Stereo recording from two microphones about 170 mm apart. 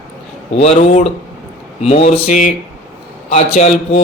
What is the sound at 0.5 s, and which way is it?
Speech, 40° left (ahead or behind).